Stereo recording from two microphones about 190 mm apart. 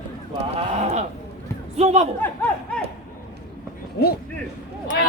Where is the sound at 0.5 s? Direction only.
35° right (ahead or behind).